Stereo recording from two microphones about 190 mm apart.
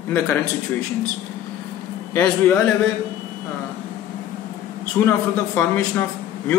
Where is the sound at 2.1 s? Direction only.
10° left (ahead or behind).